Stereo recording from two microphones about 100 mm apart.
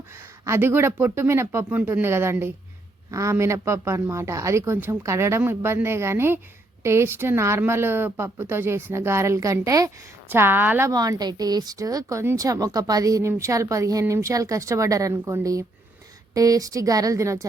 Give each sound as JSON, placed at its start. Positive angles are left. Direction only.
{"t": 0.4, "sound": "a woman's voice", "side_deg": -25}
{"t": 10.2, "sound": "a woman's voice", "side_deg": -20}
{"t": 10.8, "sound": "speech", "side_deg": -35}